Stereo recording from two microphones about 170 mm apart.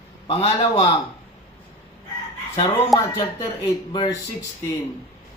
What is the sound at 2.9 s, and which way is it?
A man's voice, 25° left (ahead or behind).